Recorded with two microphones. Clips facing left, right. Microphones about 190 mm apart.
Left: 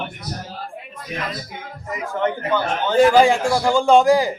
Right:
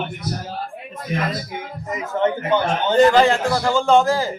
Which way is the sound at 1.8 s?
20° right (ahead or behind).